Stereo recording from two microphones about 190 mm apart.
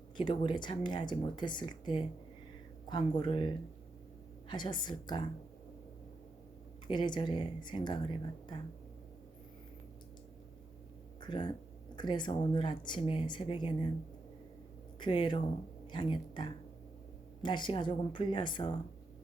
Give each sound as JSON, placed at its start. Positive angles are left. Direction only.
{"t": 0.2, "sound": "speech", "side_deg": 25}
{"t": 6.8, "sound": "speech", "side_deg": 25}
{"t": 11.2, "sound": "speech", "side_deg": 25}
{"t": 14.9, "sound": "speech", "side_deg": 25}